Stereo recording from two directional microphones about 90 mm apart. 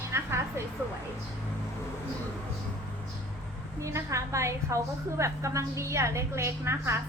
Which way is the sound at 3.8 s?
35° right (ahead or behind).